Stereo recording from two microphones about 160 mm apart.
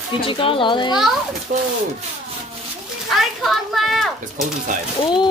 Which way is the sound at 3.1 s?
Centre (ahead or behind).